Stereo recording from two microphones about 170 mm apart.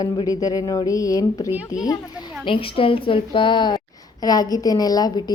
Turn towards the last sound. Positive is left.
turn(degrees=20)  # may be behind; listen again after turning